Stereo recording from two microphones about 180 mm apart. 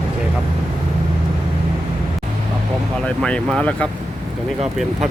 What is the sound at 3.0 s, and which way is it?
Speech, 5° left (ahead or behind).